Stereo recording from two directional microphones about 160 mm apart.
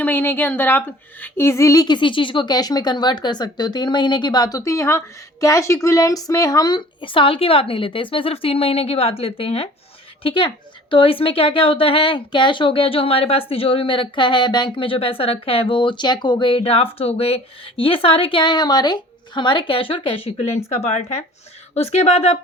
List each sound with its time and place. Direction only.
0.0 s a woman's voice: 10° left (ahead or behind); by 22.4 s 40° left (ahead or behind)